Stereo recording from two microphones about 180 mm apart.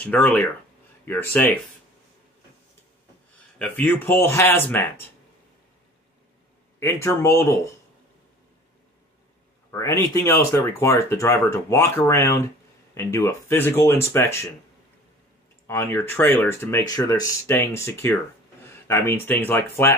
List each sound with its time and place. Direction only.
0.0 s speech: 10° left (ahead or behind)
3.5 s speech: 10° left (ahead or behind)
6.8 s speech: 15° left (ahead or behind)
9.7 s speech: 15° left (ahead or behind)
15.6 s speech: 15° left (ahead or behind)